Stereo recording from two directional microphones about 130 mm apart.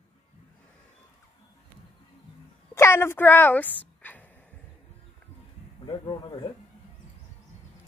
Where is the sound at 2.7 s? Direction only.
20° left (ahead or behind).